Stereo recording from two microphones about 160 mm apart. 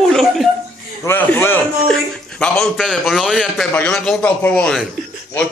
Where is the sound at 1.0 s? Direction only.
15° left (ahead or behind).